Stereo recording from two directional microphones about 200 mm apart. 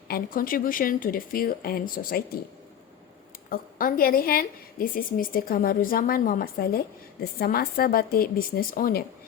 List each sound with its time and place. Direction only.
0.1 s a woman's voice: 45° left (ahead or behind)
3.5 s a woman's voice: 45° left (ahead or behind)